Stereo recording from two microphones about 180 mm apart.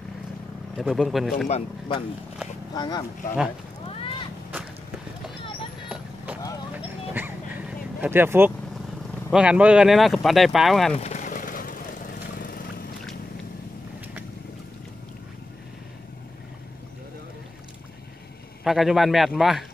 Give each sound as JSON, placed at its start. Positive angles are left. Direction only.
{"t": 0.7, "sound": "speech", "side_deg": 0}
{"t": 1.5, "sound": "speech", "side_deg": 30}
{"t": 3.9, "sound": "a sound", "side_deg": 30}
{"t": 7.2, "sound": "bow-wow", "side_deg": -10}
{"t": 9.3, "sound": "speech", "side_deg": -5}
{"t": 11.0, "sound": "vehicle", "side_deg": 40}
{"t": 18.6, "sound": "speech", "side_deg": 0}